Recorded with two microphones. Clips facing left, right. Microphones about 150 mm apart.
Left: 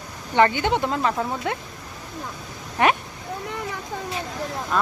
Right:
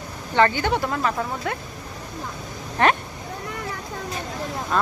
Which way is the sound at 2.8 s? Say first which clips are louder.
Even; 15° left (ahead or behind).